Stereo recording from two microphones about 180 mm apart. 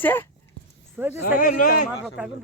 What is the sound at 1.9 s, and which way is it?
Speech, 5° right (ahead or behind).